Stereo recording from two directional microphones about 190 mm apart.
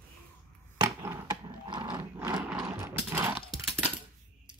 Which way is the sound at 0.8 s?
15° right (ahead or behind).